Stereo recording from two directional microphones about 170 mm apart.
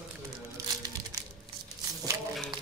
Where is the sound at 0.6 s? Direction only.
20° right (ahead or behind).